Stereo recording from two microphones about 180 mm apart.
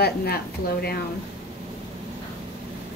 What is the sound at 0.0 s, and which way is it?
Speech, 60° left (ahead or behind).